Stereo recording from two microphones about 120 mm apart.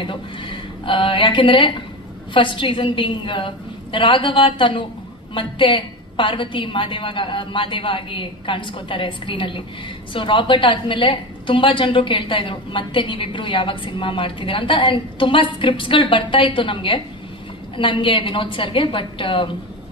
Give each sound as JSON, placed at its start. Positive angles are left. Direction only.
{"t": 0.0, "sound": "a woman's voice", "side_deg": 45}